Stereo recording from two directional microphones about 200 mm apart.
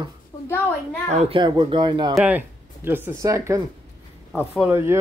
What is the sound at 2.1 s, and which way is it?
Speech, 10° right (ahead or behind).